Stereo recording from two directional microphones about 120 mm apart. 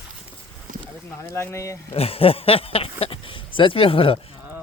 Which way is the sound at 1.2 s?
20° left (ahead or behind).